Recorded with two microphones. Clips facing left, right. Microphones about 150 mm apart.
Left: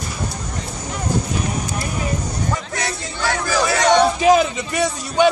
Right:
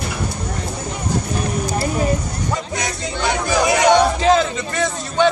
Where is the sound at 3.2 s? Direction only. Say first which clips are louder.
Right 2 dB; 20° right (ahead or behind).